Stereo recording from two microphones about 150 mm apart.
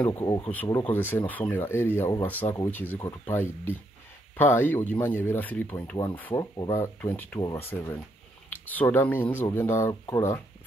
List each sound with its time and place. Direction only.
0.0 s speech: 15° left (ahead or behind)
6.4 s speech: 25° left (ahead or behind)
6.8 s speech: 15° left (ahead or behind)